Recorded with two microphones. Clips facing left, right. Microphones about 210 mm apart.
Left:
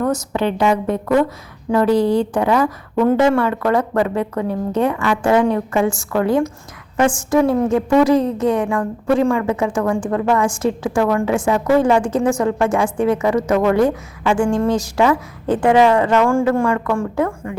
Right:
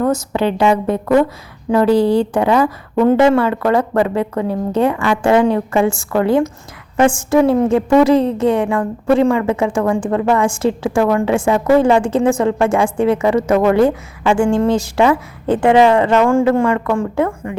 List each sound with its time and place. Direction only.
0.0 s a woman's voice: 30° right (ahead or behind)